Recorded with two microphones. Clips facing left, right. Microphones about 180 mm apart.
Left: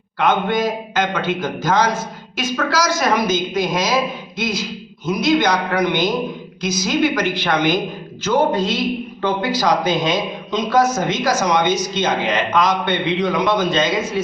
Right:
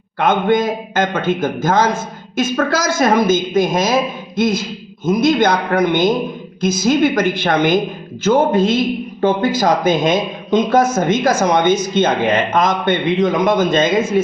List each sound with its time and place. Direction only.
0.2 s a man's voice: 50° right (ahead or behind)